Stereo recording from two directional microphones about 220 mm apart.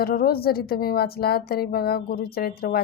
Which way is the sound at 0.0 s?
45° left (ahead or behind).